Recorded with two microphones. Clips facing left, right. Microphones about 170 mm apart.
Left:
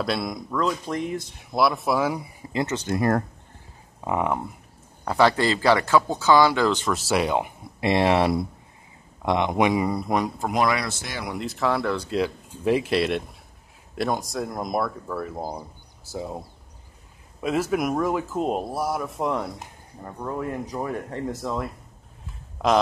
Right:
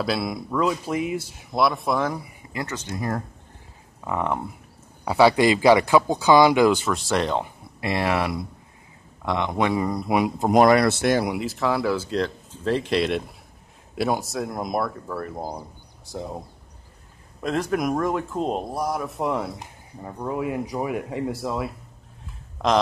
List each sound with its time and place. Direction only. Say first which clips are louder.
0.0 s speech: right 1 dB; centre (ahead or behind)
2.5 s speech: left 5 dB; 25° left (ahead or behind)
2.9 s speech: left 7 dB; 65° left (ahead or behind)
4.0 s speech: left 2 dB; 15° left (ahead or behind)
5.0 s speech: right 3 dB; 10° right (ahead or behind)
6.9 s speech: even; 5° left (ahead or behind)
7.8 s speech: left 4 dB; 25° left (ahead or behind)
10.0 s speech: right 2 dB; 10° right (ahead or behind)
10.5 s speech: right 9 dB; 50° right (ahead or behind)
11.3 s speech: right 1 dB; centre (ahead or behind)
12.2 s speech: left 1 dB; 10° left (ahead or behind); by 21.7 s 5° right (ahead or behind)
22.2 s a sound: even; 5° left (ahead or behind)